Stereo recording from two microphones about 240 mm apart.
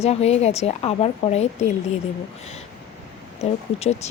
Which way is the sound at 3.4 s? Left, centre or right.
Left.